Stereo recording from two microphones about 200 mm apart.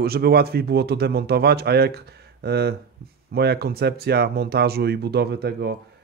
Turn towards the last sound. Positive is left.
turn(degrees=-55)  # may be behind; listen again after turning